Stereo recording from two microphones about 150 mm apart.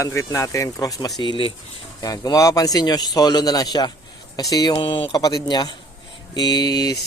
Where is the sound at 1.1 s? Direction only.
35° left (ahead or behind).